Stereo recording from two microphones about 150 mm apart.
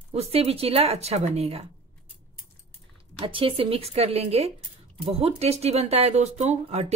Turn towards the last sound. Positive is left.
turn(degrees=-45)  # may be behind; listen again after turning